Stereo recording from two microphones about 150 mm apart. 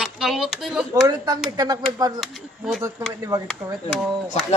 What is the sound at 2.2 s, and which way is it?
Speech, centre (ahead or behind).